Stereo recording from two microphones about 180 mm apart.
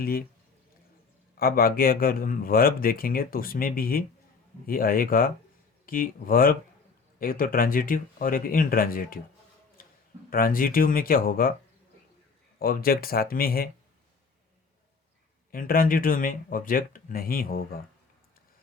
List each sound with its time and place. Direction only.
0.0 s speech: 55° left (ahead or behind)
1.4 s speech: 55° left (ahead or behind)
9.8 s a sound: 55° left (ahead or behind)
10.2 s speech: 55° left (ahead or behind)
12.5 s speech: 55° left (ahead or behind)
15.5 s speech: 55° left (ahead or behind)